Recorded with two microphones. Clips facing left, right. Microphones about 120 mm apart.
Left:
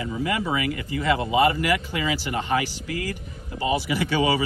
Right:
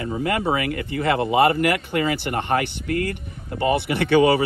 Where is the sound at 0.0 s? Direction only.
50° right (ahead or behind).